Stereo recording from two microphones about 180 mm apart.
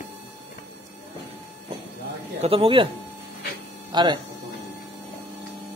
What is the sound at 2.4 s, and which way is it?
Speech, 30° right (ahead or behind).